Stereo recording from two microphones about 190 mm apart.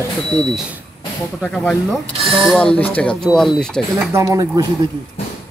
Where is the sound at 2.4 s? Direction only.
5° left (ahead or behind).